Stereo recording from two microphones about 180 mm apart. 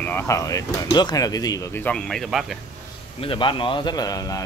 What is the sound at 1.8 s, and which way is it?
Speech, 5° left (ahead or behind).